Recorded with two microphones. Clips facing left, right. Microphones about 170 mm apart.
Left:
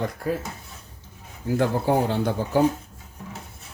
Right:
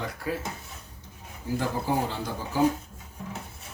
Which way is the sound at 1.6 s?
65° left (ahead or behind).